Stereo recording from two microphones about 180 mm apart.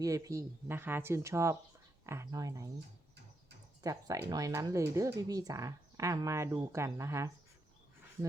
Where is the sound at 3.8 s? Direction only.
20° right (ahead or behind).